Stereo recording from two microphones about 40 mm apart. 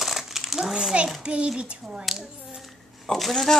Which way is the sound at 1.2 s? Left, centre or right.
Right.